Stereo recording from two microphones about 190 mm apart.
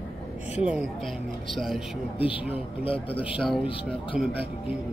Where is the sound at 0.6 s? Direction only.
5° right (ahead or behind).